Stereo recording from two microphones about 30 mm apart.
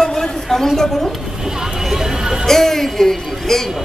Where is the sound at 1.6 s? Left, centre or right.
Centre.